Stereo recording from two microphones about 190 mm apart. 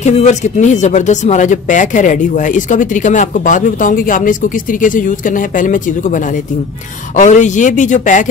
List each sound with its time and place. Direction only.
0.0 s speech: 35° left (ahead or behind)